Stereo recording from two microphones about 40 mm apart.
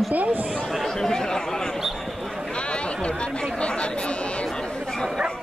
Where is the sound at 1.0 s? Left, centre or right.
Centre.